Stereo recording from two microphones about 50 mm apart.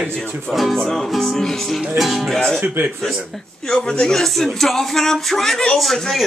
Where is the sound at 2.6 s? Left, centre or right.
Right.